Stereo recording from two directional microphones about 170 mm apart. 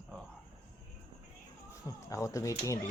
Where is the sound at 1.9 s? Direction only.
20° left (ahead or behind).